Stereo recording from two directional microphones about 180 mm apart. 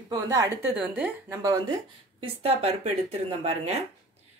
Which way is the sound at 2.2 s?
35° right (ahead or behind).